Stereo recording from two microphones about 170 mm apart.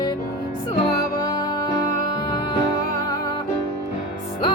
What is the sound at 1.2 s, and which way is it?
Music, 25° left (ahead or behind).